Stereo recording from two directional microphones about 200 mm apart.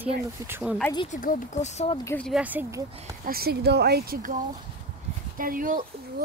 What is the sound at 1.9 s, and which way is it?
Speech, 15° left (ahead or behind).